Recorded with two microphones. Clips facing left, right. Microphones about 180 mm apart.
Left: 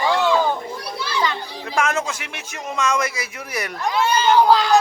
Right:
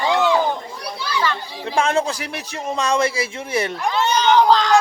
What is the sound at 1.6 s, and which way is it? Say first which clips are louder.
Speech: right 3 dB; 30° right (ahead or behind).